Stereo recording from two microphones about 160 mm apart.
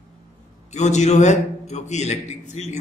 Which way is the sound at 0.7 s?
45° left (ahead or behind).